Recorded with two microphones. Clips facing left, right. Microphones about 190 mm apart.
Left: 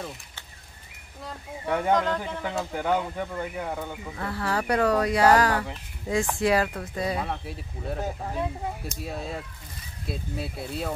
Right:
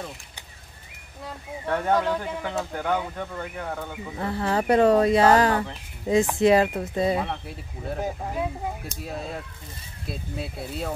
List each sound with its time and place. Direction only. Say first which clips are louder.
1.2 s speech: right 1 dB; 5° left (ahead or behind)
4.2 s speech: right 4 dB; 20° right (ahead or behind)
7.2 s speech: right 2 dB; centre (ahead or behind)
9.0 s speech: right 1 dB; centre (ahead or behind)